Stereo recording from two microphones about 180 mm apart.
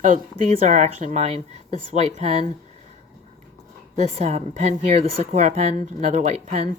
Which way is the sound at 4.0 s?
35° right (ahead or behind).